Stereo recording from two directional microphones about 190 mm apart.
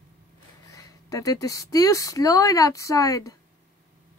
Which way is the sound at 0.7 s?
15° left (ahead or behind).